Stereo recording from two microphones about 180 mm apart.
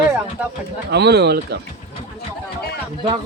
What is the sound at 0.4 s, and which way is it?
Speech, 5° right (ahead or behind).